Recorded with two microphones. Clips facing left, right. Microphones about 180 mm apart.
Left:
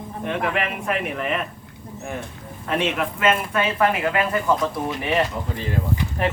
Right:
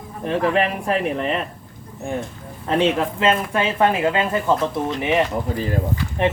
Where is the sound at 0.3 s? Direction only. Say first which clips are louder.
Right 5 dB; 35° right (ahead or behind).